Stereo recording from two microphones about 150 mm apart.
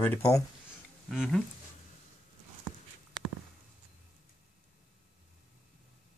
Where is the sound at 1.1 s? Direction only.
Centre (ahead or behind).